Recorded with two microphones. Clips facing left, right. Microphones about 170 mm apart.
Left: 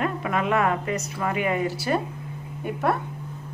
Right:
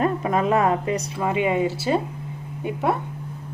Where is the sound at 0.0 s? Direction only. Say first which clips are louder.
Right 4 dB; 35° right (ahead or behind).